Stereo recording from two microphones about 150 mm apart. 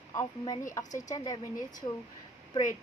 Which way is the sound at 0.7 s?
20° left (ahead or behind).